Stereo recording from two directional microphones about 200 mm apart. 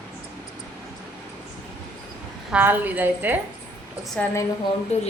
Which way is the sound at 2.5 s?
10° right (ahead or behind).